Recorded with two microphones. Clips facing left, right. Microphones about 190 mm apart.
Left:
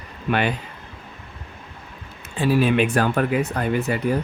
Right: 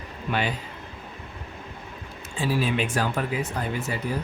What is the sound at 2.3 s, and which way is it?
Speech, 60° left (ahead or behind).